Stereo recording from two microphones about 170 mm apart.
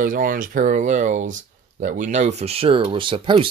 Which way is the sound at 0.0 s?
55° right (ahead or behind).